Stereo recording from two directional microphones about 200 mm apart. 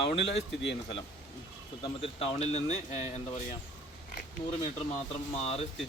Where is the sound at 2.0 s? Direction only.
30° left (ahead or behind).